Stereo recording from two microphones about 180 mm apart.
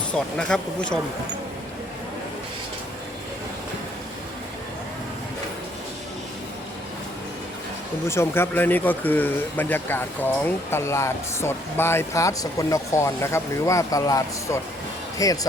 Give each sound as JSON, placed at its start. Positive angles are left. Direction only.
{"t": 0.1, "sound": "speech", "side_deg": 5}
{"t": 8.0, "sound": "speech", "side_deg": 15}